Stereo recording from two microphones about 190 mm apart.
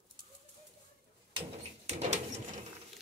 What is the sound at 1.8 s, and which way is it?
Bird, 35° right (ahead or behind).